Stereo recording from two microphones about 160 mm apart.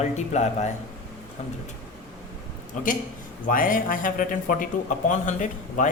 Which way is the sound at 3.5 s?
60° left (ahead or behind).